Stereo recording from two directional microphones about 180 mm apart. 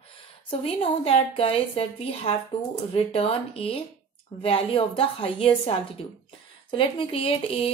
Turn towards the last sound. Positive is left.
turn(degrees=30)  # may be behind; listen again after turning